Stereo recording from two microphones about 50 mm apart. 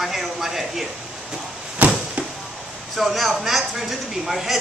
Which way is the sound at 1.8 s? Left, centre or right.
Right.